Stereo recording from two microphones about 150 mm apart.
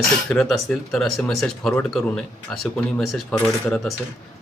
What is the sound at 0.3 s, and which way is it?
Speech, 5° left (ahead or behind).